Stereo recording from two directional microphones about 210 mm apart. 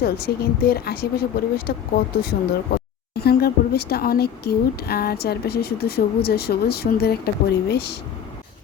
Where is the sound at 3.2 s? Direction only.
50° left (ahead or behind).